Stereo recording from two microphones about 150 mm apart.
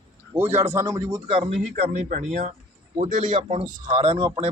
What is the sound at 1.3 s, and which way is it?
Speech, 35° right (ahead or behind).